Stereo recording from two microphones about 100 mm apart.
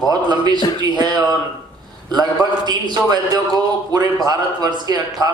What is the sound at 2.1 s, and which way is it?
A man's voice, 45° right (ahead or behind).